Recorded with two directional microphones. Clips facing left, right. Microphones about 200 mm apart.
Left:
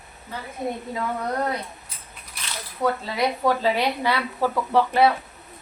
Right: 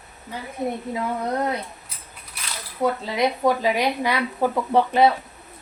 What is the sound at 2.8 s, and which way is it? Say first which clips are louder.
Speech: right 2 dB; 20° right (ahead or behind).